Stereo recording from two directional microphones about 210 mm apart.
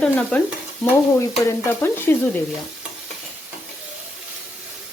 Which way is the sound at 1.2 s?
10° left (ahead or behind).